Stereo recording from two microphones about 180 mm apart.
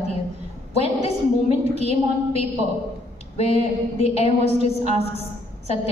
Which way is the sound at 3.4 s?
35° left (ahead or behind).